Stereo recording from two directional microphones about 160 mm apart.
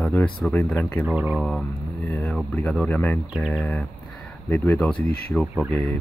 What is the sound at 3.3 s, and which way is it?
Speech, 5° right (ahead or behind).